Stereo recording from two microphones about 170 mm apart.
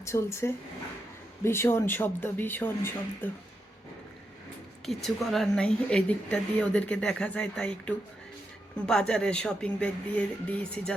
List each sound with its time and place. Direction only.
0.0 s speech: 15° left (ahead or behind)
5.0 s speech: centre (ahead or behind)